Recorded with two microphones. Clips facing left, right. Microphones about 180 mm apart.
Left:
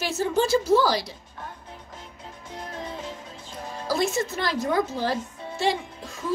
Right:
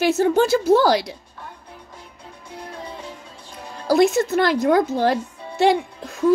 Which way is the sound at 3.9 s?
65° right (ahead or behind).